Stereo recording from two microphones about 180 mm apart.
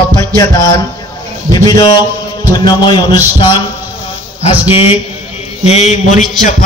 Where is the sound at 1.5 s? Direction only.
20° left (ahead or behind).